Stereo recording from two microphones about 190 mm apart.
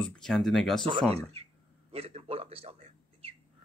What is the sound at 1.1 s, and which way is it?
A man's voice, 35° right (ahead or behind).